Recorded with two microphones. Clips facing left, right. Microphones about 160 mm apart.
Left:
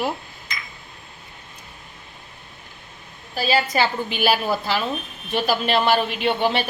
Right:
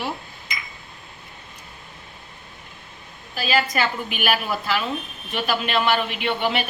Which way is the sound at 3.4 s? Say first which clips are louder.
Left 2 dB; 30° left (ahead or behind).